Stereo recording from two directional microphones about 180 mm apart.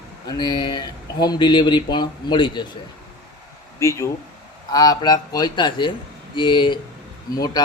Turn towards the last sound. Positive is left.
turn(degrees=20)  # may be behind; listen again after turning